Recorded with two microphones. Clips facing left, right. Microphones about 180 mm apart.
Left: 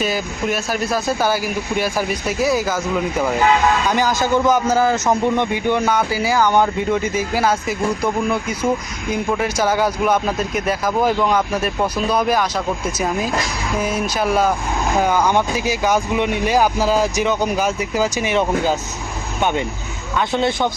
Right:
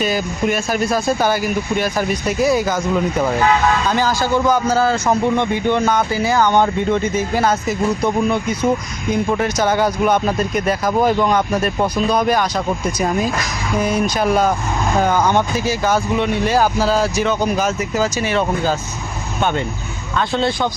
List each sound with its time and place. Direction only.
0.0 s speech: centre (ahead or behind)
3.8 s a man's voice: 15° left (ahead or behind)